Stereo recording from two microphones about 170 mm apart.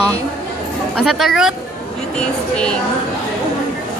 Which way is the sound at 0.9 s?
Centre (ahead or behind).